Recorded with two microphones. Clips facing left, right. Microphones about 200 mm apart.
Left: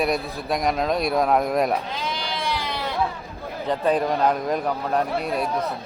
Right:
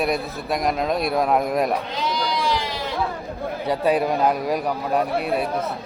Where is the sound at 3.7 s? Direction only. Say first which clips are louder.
Right 1 dB; 10° right (ahead or behind).